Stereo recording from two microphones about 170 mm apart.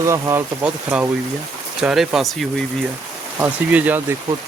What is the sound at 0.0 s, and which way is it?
Speech, 15° right (ahead or behind).